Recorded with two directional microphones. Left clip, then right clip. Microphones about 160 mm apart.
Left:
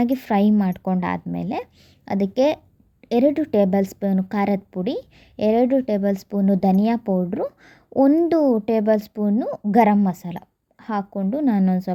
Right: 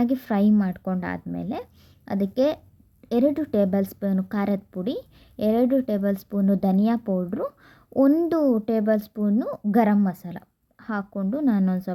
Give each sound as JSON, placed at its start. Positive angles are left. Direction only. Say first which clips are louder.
{"t": 0.0, "sound": "speech", "louder": "left 4 dB", "side_deg": 10}